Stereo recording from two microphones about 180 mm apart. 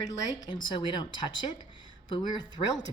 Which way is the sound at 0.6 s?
25° left (ahead or behind).